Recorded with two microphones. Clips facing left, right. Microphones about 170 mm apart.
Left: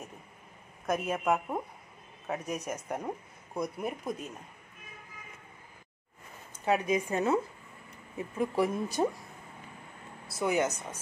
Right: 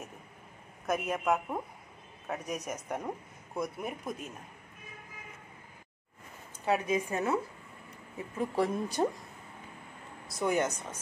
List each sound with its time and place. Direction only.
0.8 s a woman's voice: centre (ahead or behind)
6.6 s speech: 15° left (ahead or behind)
8.4 s speech: 10° left (ahead or behind)
10.3 s speech: 5° left (ahead or behind)